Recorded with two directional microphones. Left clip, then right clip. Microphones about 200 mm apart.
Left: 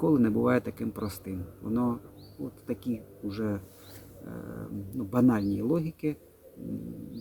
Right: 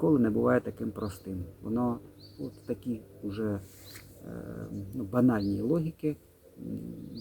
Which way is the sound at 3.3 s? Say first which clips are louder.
Even; 5° left (ahead or behind).